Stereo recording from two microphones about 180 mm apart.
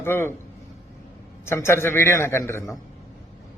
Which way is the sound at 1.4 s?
15° left (ahead or behind).